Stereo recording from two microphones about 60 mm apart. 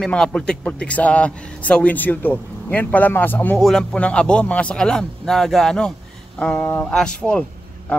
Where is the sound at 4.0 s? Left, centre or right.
Centre.